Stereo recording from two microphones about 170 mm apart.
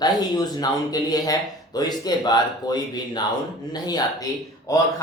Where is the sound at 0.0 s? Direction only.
25° left (ahead or behind).